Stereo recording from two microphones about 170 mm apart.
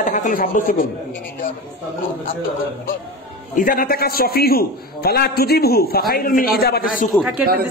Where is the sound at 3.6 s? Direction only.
55° left (ahead or behind).